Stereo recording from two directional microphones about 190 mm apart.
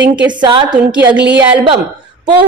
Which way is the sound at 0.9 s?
5° right (ahead or behind).